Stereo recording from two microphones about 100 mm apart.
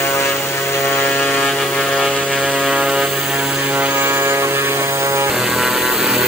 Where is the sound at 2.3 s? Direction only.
5° left (ahead or behind).